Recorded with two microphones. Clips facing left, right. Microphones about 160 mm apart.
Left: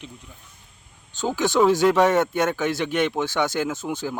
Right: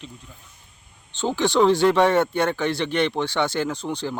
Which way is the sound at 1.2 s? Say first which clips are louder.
Right 1 dB; 5° left (ahead or behind).